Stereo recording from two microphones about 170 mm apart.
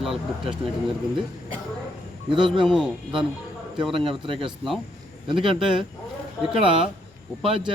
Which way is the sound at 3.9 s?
30° right (ahead or behind).